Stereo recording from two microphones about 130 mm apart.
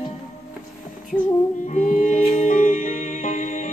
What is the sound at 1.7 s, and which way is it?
Music, 75° left (ahead or behind).